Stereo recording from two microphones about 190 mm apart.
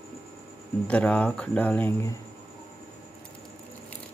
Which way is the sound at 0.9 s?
5° left (ahead or behind).